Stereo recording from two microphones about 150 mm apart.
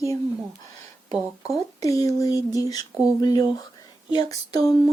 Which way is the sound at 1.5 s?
25° left (ahead or behind).